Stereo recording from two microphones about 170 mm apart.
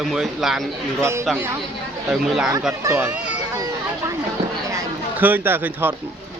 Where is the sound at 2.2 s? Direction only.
Centre (ahead or behind).